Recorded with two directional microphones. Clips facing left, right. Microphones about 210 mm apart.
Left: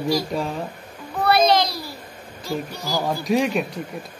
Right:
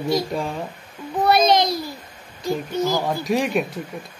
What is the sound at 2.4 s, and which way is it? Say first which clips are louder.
Speech: right 6 dB; 20° right (ahead or behind).